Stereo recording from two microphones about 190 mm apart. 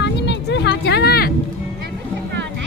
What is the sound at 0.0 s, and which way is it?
Vehicle, 65° left (ahead or behind).